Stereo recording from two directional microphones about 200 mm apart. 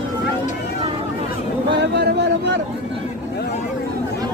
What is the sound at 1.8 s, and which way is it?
Speech, 55° right (ahead or behind).